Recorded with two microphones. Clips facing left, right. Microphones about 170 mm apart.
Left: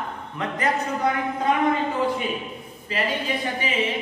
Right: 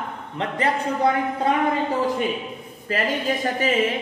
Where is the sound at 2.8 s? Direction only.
45° right (ahead or behind).